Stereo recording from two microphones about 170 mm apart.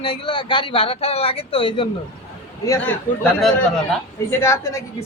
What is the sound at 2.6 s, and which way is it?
Speech, 15° left (ahead or behind).